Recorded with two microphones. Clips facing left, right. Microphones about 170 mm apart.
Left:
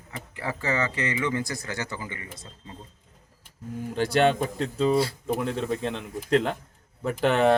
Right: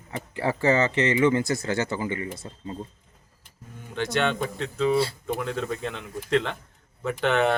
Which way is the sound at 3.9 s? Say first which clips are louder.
Left 4 dB; 35° left (ahead or behind).